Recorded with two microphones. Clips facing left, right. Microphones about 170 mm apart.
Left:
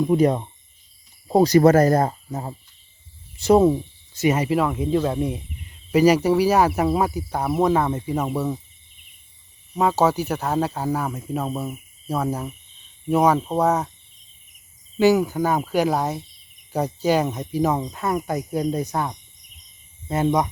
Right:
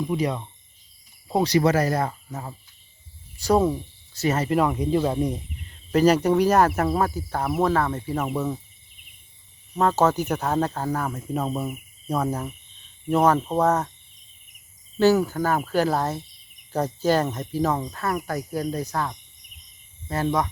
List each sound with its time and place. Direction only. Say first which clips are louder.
0.0 s speech: left 7 dB; 50° left (ahead or behind); by 2.6 s 30° left (ahead or behind)
3.3 s speech: left 5 dB; 20° left (ahead or behind)
4.4 s speech: even; centre (ahead or behind)
5.9 s speech: left 2 dB; 10° left (ahead or behind)
9.7 s speech: left 1 dB; 10° left (ahead or behind)
14.9 s speech: left 1 dB; 10° left (ahead or behind)